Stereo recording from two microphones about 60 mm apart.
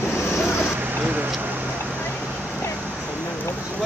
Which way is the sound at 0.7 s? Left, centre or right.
Right.